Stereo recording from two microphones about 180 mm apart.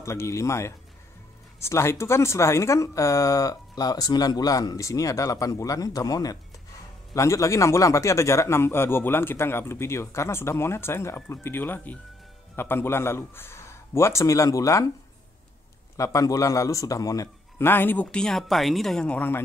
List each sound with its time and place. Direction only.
0.0 s a man's voice: 15° left (ahead or behind)
16.0 s a man's voice: 20° left (ahead or behind)